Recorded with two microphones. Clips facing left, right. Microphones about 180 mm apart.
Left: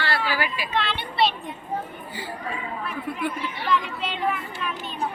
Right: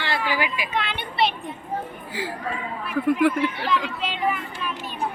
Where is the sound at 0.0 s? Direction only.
15° right (ahead or behind).